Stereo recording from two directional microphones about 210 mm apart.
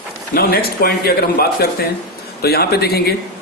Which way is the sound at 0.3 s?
45° left (ahead or behind).